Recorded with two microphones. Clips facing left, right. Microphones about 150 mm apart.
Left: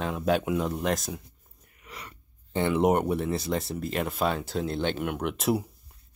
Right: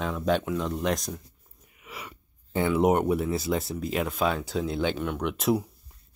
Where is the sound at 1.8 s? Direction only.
10° right (ahead or behind).